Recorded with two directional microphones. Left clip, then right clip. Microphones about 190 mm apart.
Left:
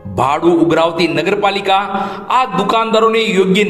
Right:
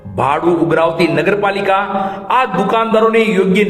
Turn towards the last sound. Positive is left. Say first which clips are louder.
# even
turn(degrees=35)  # may be behind; listen again after turning